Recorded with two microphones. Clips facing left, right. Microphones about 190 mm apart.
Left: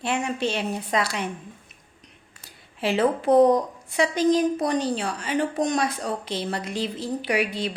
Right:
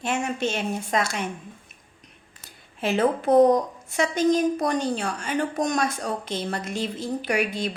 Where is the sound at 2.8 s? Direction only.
30° left (ahead or behind).